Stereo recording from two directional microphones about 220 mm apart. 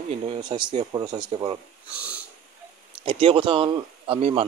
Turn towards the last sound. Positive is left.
turn(degrees=-25)  # may be behind; listen again after turning